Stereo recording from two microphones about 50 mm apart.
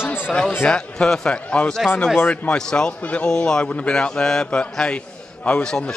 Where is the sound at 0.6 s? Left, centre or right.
Centre.